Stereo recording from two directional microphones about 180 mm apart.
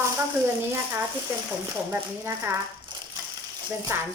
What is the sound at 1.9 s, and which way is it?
Speech, 15° right (ahead or behind).